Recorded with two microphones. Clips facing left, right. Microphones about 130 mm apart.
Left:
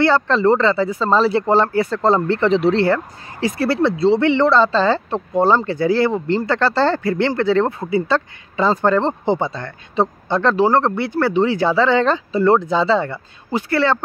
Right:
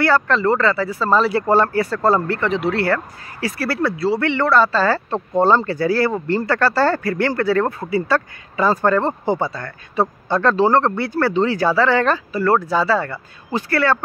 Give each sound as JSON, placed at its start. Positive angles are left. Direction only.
{"t": 0.0, "sound": "speech", "side_deg": 25}